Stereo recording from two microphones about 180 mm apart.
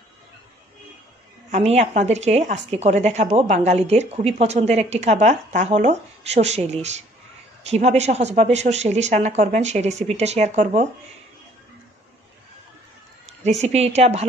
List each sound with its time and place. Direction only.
1.5 s speech: 35° right (ahead or behind)
13.4 s speech: 40° right (ahead or behind)